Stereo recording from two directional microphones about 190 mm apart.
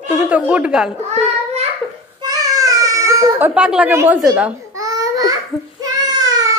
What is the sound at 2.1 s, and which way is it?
Baby cry, 20° right (ahead or behind).